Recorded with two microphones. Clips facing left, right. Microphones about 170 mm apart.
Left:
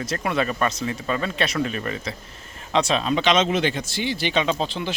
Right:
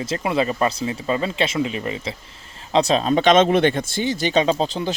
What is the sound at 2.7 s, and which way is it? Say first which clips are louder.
Speech: right 4 dB; 35° right (ahead or behind).